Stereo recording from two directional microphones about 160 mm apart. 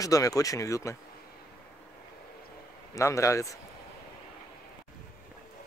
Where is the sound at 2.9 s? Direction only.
20° left (ahead or behind).